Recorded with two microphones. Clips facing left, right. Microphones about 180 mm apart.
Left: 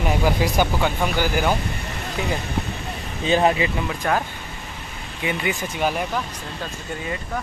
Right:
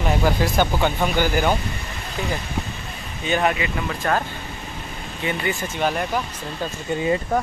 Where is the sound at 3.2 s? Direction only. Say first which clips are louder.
Left 3 dB; 30° left (ahead or behind).